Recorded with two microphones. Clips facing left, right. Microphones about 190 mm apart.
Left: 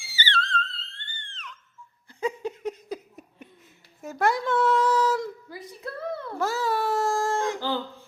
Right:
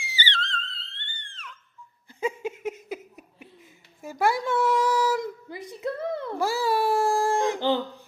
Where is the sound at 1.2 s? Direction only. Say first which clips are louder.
Left 1 dB; 10° right (ahead or behind).